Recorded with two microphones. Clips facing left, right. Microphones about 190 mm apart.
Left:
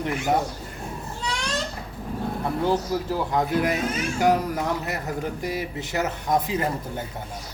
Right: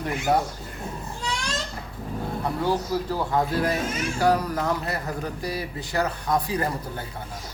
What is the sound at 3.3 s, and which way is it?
Speech, 20° left (ahead or behind).